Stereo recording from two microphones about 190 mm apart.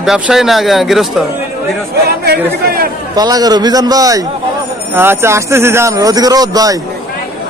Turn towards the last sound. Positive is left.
turn(degrees=-20)  # may be behind; listen again after turning